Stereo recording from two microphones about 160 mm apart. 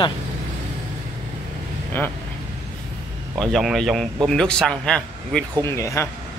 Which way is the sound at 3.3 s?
Centre (ahead or behind).